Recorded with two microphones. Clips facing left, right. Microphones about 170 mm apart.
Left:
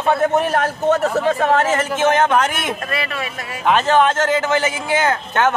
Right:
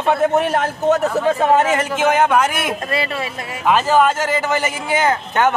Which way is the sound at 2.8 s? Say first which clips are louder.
Right 2 dB; 25° right (ahead or behind).